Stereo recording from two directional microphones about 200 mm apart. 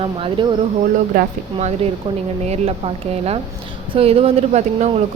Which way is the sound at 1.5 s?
30° right (ahead or behind).